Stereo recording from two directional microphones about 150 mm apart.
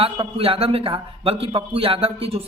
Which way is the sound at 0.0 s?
40° right (ahead or behind).